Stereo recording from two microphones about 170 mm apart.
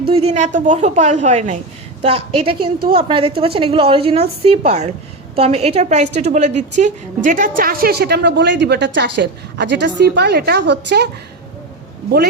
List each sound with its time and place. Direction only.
0.0 s a woman's voice: 35° right (ahead or behind); by 11.1 s 85° right